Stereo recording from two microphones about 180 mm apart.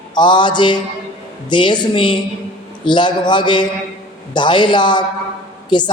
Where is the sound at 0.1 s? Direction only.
25° left (ahead or behind).